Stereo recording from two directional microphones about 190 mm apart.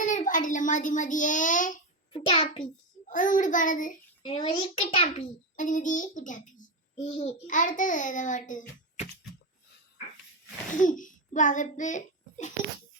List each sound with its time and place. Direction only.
0.0 s a child's voice: 40° left (ahead or behind)
2.1 s a child's voice: 30° left (ahead or behind)
3.1 s child singing: 45° left (ahead or behind)
4.2 s a child's voice: 25° left (ahead or behind); by 9.0 s 40° left (ahead or behind)
10.8 s a child's voice: 45° left (ahead or behind)